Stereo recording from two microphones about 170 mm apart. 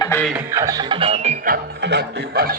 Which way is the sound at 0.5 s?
20° right (ahead or behind).